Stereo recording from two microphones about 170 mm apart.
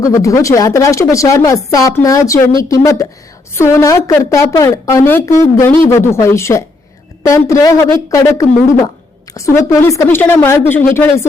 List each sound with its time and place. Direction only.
0.0 s a woman's voice: 20° left (ahead or behind)